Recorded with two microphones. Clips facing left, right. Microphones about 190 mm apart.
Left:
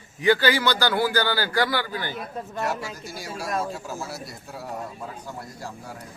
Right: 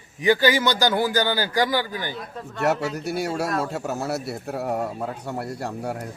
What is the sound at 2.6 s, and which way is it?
A man's voice, 65° right (ahead or behind).